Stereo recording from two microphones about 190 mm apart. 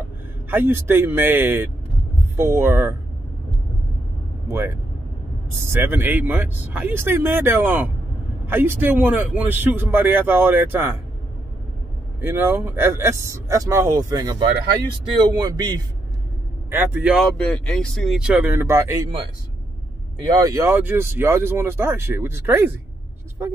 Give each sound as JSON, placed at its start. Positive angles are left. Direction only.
{"t": 0.5, "sound": "speech", "side_deg": -10}
{"t": 4.5, "sound": "speech", "side_deg": -10}
{"t": 12.2, "sound": "speech", "side_deg": -10}
{"t": 16.7, "sound": "speech", "side_deg": -10}
{"t": 20.2, "sound": "speech", "side_deg": -20}